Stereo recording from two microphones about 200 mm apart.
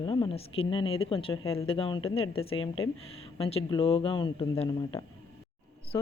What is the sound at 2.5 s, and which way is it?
Speech, 90° left.